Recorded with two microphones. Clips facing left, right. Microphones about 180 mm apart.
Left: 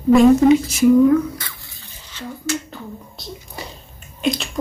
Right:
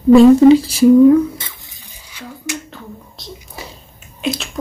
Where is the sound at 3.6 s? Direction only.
Centre (ahead or behind).